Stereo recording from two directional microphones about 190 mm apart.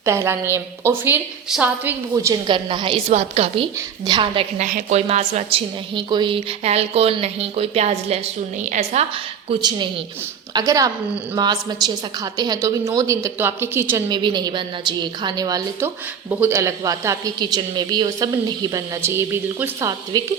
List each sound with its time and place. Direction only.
0.0 s a woman's voice: 15° right (ahead or behind); by 9.0 s 40° right (ahead or behind)
9.5 s a woman's voice: 25° right (ahead or behind)
14.1 s a woman's voice: 25° right (ahead or behind)